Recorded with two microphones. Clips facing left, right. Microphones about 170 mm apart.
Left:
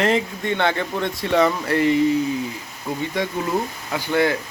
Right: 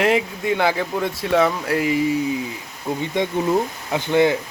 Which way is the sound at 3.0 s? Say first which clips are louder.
Right 3 dB; 20° right (ahead or behind).